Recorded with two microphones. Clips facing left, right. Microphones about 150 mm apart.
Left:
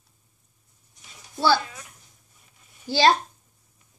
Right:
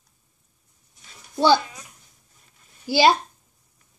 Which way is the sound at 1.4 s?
15° right (ahead or behind).